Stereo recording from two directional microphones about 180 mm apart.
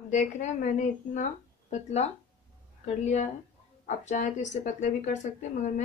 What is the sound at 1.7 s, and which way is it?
Speech, 40° left (ahead or behind).